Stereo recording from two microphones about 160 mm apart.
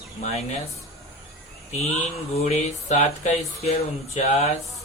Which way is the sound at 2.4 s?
45° left (ahead or behind).